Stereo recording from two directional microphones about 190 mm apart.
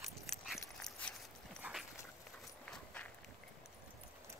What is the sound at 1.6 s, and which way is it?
Dog, 10° right (ahead or behind).